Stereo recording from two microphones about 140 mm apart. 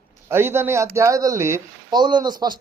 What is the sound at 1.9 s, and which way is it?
Speech, 30° right (ahead or behind).